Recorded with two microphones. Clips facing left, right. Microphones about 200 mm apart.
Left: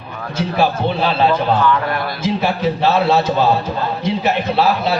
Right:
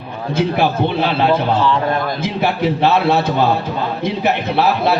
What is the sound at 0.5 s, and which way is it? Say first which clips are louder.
Speech: left 2 dB; 60° right (ahead or behind).